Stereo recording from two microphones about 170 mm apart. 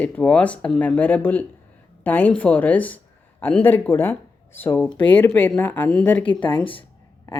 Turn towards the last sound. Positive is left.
turn(degrees=30)  # may be behind; listen again after turning